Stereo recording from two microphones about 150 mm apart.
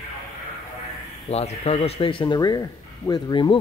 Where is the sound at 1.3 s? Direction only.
45° left (ahead or behind).